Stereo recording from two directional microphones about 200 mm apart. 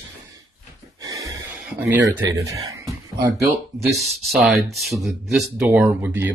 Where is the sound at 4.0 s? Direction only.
Centre (ahead or behind).